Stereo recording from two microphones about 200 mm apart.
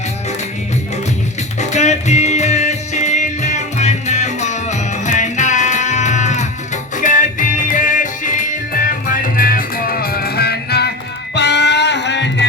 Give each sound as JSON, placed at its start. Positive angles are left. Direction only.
{"t": 1.5, "sound": "music", "side_deg": 35}